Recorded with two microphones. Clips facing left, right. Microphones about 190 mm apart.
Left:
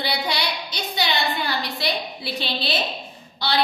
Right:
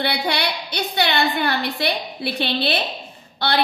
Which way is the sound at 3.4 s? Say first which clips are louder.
Right 3 dB; 60° right (ahead or behind).